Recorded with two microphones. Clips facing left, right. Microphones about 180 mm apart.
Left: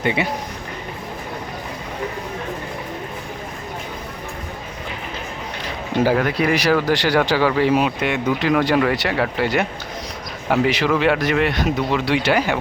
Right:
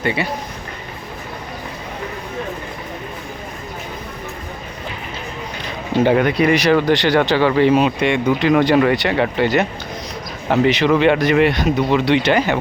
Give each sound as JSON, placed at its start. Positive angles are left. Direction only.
{"t": 0.0, "sound": "speech", "side_deg": 20}
{"t": 6.1, "sound": "speech", "side_deg": 0}